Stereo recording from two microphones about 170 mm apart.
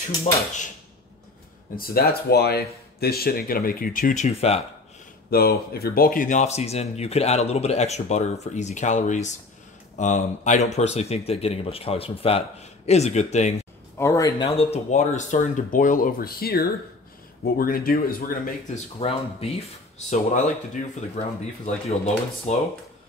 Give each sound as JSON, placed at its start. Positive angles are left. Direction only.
{"t": 1.8, "sound": "speech", "side_deg": 65}
{"t": 5.3, "sound": "speech", "side_deg": 65}
{"t": 13.9, "sound": "speech", "side_deg": 15}
{"t": 14.6, "sound": "speech", "side_deg": 40}
{"t": 18.9, "sound": "speech", "side_deg": 35}
{"t": 20.1, "sound": "speech", "side_deg": 45}
{"t": 21.6, "sound": "speech", "side_deg": 40}